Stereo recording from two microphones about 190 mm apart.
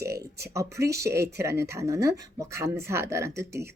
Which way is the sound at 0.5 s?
15° right (ahead or behind).